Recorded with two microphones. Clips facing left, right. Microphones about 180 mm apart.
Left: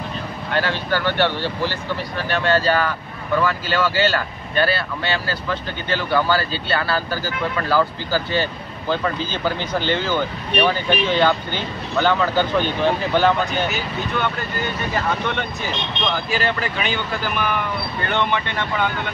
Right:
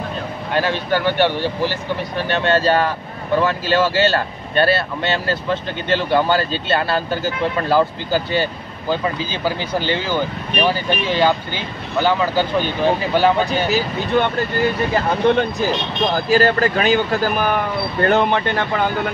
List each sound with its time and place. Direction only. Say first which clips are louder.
0.5 s speech: right 3 dB; 15° right (ahead or behind)
13.5 s speech: right 5 dB; 35° right (ahead or behind)